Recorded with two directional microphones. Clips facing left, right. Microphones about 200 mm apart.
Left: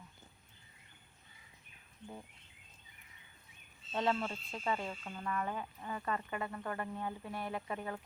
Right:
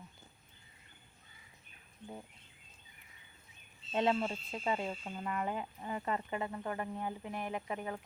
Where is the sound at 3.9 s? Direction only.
20° right (ahead or behind).